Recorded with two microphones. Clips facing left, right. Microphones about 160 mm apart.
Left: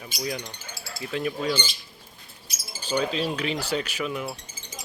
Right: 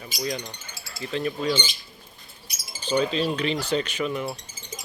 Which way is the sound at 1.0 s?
5° left (ahead or behind).